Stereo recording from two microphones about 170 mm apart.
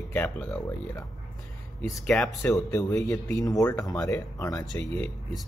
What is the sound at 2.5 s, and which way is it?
Speech, 20° left (ahead or behind).